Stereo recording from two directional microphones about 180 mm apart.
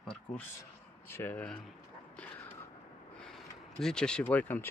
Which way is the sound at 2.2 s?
10° left (ahead or behind).